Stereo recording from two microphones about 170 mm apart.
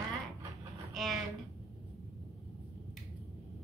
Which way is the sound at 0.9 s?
Centre (ahead or behind).